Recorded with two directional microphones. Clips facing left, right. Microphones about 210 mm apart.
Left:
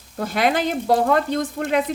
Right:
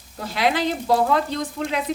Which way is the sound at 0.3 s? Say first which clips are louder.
Left 1 dB; 50° left (ahead or behind).